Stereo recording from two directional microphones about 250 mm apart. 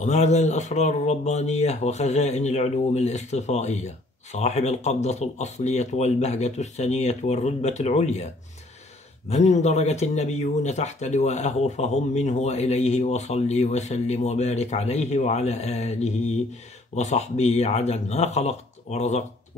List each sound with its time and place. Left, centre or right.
0.0 s speech: left
9.3 s speech: left